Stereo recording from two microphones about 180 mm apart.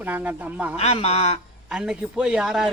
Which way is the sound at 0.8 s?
35° left (ahead or behind).